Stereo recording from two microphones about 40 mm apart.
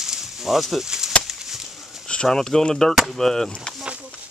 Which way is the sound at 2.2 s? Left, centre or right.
Centre.